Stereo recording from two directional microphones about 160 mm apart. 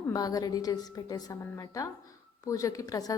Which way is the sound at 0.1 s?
25° left (ahead or behind).